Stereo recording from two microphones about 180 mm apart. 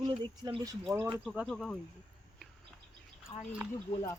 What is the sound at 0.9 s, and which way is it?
Speech, 10° right (ahead or behind).